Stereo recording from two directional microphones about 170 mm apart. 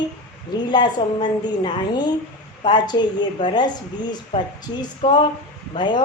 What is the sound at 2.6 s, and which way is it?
A woman's voice, 25° left (ahead or behind).